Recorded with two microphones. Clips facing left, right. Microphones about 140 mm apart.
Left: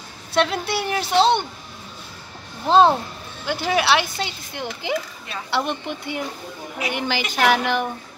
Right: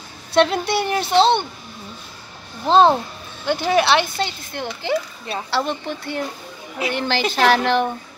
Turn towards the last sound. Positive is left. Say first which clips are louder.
# right 3 dB
turn(degrees=10)  # may be behind; listen again after turning